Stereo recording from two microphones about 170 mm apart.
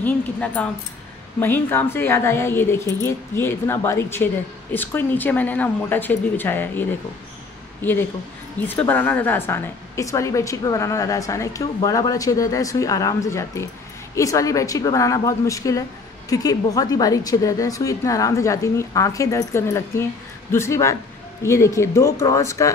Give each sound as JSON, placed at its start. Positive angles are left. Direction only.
{"t": 0.0, "sound": "a woman's voice", "side_deg": 10}